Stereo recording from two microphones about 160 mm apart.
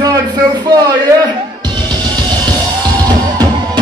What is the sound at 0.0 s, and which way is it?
Music, 25° right (ahead or behind).